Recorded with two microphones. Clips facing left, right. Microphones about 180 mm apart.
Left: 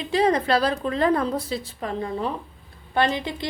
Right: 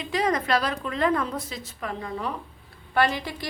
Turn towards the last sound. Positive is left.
turn(degrees=20)  # may be behind; listen again after turning